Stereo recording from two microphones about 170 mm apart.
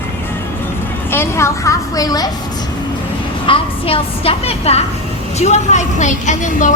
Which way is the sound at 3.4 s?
30° left (ahead or behind).